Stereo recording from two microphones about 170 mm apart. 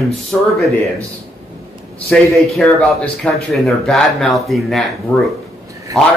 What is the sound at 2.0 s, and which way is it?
Speech, centre (ahead or behind).